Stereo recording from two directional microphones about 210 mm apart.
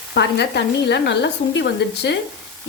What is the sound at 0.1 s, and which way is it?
A woman's voice, 55° left (ahead or behind).